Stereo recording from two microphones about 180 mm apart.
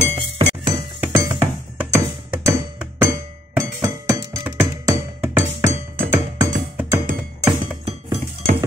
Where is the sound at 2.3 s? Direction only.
10° right (ahead or behind).